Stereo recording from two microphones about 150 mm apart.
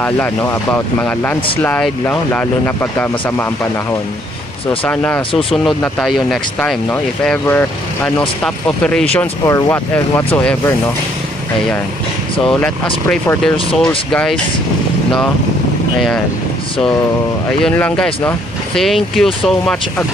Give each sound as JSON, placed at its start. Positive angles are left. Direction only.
{"t": 0.0, "sound": "speech", "side_deg": 15}
{"t": 4.8, "sound": "speech", "side_deg": 10}
{"t": 9.5, "sound": "speech", "side_deg": 20}
{"t": 12.4, "sound": "speech", "side_deg": 5}
{"t": 13.7, "sound": "speech", "side_deg": 5}
{"t": 17.5, "sound": "speech", "side_deg": 5}